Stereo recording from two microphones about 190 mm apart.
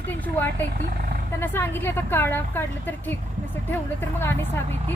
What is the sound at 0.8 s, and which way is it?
Speech, 50° right (ahead or behind).